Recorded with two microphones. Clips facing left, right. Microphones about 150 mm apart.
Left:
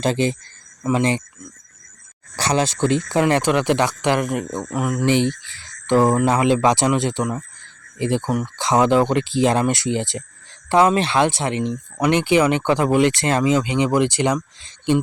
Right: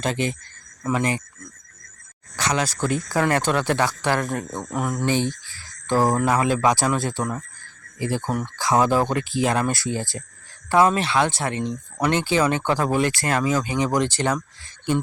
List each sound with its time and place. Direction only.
0.0 s speech: 30° left (ahead or behind)
2.3 s speech: 30° left (ahead or behind); by 15.0 s 15° left (ahead or behind)